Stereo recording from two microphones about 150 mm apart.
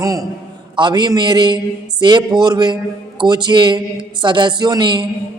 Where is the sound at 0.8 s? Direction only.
30° right (ahead or behind).